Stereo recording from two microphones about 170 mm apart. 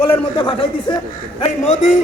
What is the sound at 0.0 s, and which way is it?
Speech, 30° left (ahead or behind).